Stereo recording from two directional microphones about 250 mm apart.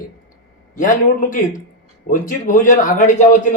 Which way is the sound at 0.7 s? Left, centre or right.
Left.